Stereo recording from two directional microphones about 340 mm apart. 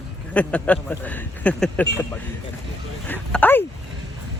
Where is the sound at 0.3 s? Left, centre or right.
Centre.